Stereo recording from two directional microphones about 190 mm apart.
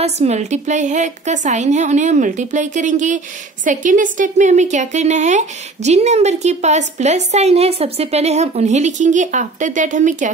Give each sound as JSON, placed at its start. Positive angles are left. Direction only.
{"t": 0.0, "sound": "a woman's voice", "side_deg": -35}